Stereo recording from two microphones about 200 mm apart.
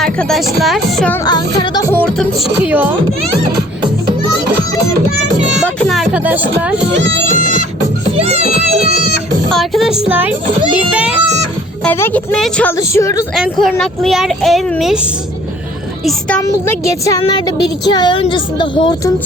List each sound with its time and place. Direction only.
0.0 s speech: centre (ahead or behind)
1.2 s speech: 20° left (ahead or behind)
2.1 s speech: 5° right (ahead or behind)
5.5 s a sound: 5° left (ahead or behind)
7.3 s music: 35° right (ahead or behind)
8.1 s a child's voice: 30° right (ahead or behind)
9.5 s speech: centre (ahead or behind)
11.8 s a woman's voice: 10° left (ahead or behind)
13.3 s speech: centre (ahead or behind)
16.4 s speech: 15° left (ahead or behind)